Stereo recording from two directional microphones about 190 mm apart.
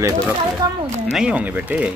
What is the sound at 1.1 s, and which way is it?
Speech, 5° right (ahead or behind).